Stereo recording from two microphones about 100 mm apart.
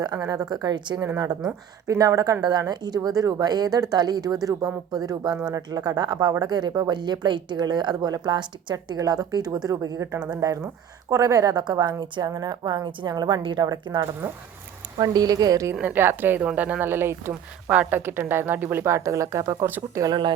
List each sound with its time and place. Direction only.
0.0 s speech: 40° right (ahead or behind)
1.0 s a woman's voice: 30° right (ahead or behind)
15.7 s a woman's voice: 15° right (ahead or behind); by 19.6 s 30° right (ahead or behind)
19.6 s a woman's voice: 20° right (ahead or behind)
20.0 s speech: 45° right (ahead or behind)